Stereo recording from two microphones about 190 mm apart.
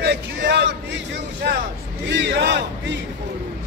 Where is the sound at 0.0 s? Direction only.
65° right (ahead or behind).